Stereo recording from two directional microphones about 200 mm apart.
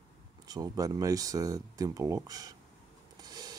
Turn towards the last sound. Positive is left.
turn(degrees=-20)  # may be behind; listen again after turning